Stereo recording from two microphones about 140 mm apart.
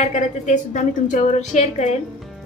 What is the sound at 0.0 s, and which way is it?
A woman's voice, 55° left (ahead or behind).